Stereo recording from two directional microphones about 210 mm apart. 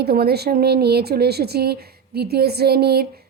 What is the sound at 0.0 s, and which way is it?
A woman's voice, 50° right (ahead or behind).